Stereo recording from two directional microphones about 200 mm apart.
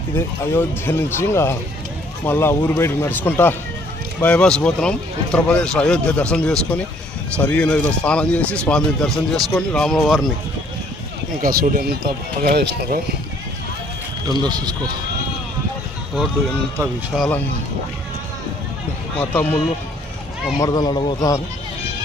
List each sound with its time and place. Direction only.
0.1 s speech: 10° left (ahead or behind)
11.4 s speech: 45° right (ahead or behind)
14.4 s speech: 20° right (ahead or behind)
17.2 s speech: 5° left (ahead or behind)
19.1 s speech: 10° left (ahead or behind)
20.6 s speech: 20° left (ahead or behind)